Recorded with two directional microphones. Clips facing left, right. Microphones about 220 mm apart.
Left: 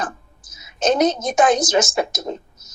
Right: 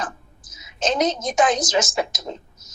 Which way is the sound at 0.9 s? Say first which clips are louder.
Left 4 dB; 55° left (ahead or behind).